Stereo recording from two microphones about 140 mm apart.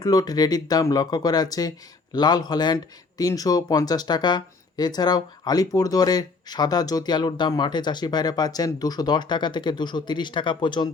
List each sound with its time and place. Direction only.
0.0 s a man's voice: 25° left (ahead or behind)